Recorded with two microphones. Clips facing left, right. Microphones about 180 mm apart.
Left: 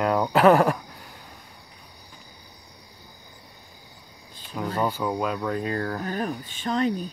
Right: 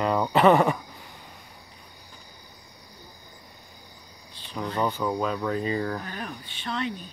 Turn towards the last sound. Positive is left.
turn(degrees=40)  # may be behind; listen again after turning